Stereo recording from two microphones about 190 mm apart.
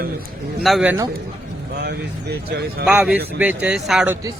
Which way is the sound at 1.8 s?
60° right (ahead or behind).